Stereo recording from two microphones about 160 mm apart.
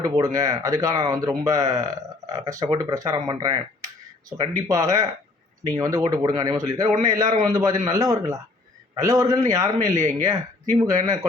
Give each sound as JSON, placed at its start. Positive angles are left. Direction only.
{"t": 0.0, "sound": "speech", "side_deg": -20}